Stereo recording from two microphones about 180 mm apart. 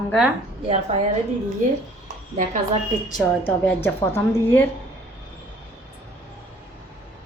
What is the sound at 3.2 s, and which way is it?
A woman's voice, 10° left (ahead or behind).